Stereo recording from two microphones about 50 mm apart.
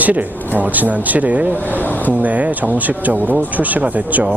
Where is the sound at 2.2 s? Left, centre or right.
Right.